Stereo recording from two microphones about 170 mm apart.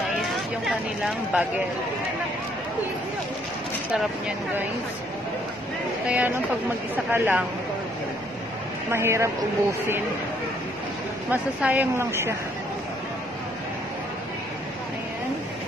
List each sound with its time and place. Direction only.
0.7 s speech: centre (ahead or behind)
6.0 s speech: 10° right (ahead or behind)
8.9 s speech: 15° right (ahead or behind)
11.2 s speech: 10° right (ahead or behind)